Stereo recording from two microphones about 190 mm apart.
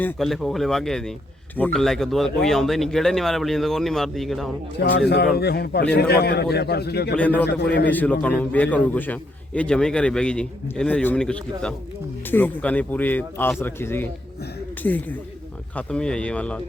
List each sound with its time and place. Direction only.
0.0 s speech: centre (ahead or behind)
4.8 s a man's voice: 60° left (ahead or behind)
7.9 s a man's voice: 10° left (ahead or behind)
15.7 s speech: 5° left (ahead or behind)